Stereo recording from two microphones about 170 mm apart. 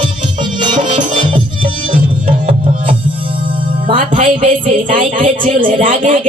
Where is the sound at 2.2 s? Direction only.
30° right (ahead or behind).